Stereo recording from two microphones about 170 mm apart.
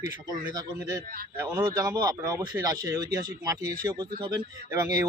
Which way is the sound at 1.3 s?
15° right (ahead or behind).